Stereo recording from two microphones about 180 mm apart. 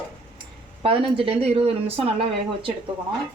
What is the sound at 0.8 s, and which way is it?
Speech, 30° right (ahead or behind).